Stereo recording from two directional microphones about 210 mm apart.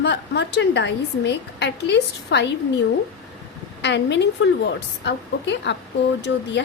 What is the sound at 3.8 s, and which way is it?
A woman's voice, 55° left (ahead or behind).